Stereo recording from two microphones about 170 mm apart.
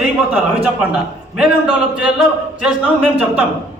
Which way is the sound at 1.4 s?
5° right (ahead or behind).